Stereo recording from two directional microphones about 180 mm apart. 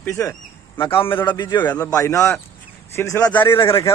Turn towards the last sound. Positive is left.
turn(degrees=15)  # may be behind; listen again after turning